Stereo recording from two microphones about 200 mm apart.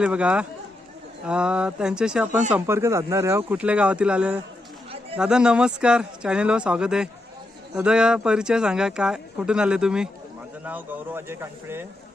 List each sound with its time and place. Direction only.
0.0 s speech: 5° right (ahead or behind)